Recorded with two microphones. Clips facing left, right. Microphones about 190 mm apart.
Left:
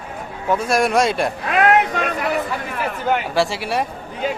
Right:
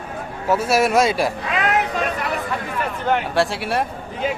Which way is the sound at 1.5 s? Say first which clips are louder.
Left 6 dB; 55° left (ahead or behind).